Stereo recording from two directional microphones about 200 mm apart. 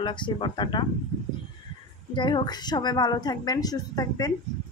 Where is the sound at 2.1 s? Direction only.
25° left (ahead or behind).